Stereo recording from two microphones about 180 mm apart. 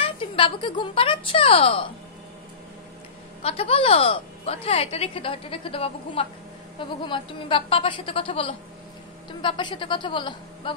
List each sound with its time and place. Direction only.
0.0 s speech: 30° left (ahead or behind)
3.4 s a woman's voice: 30° left (ahead or behind)